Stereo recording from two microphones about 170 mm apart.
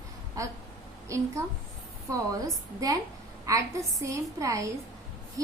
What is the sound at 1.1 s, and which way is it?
Speech, 20° right (ahead or behind).